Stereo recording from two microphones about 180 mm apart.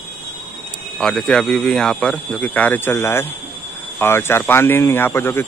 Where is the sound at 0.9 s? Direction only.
5° left (ahead or behind).